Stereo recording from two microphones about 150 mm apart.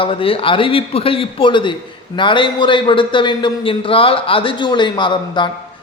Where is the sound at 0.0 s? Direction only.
35° left (ahead or behind).